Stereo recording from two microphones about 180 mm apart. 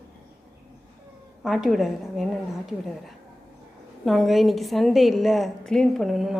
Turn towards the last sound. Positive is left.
turn(degrees=0)  # may be behind; listen again after turning